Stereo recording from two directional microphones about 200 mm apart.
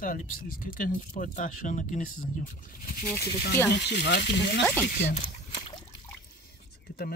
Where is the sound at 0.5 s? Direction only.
45° left (ahead or behind).